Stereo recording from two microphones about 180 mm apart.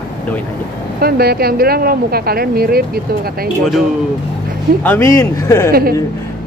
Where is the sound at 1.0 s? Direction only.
60° right (ahead or behind).